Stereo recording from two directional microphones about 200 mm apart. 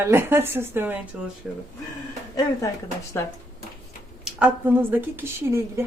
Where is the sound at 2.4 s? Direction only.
15° left (ahead or behind).